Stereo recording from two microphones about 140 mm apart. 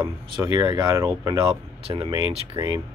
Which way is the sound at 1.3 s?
40° right (ahead or behind).